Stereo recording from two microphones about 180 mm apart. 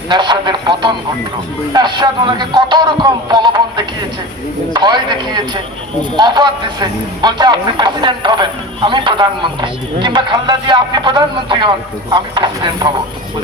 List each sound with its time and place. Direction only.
0.1 s a man's voice: 25° right (ahead or behind)